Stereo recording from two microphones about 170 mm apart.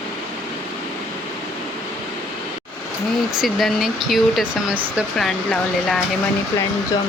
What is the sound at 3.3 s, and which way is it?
Speech, centre (ahead or behind).